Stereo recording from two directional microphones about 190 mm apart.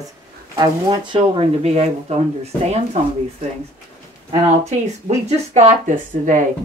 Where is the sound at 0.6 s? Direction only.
25° right (ahead or behind).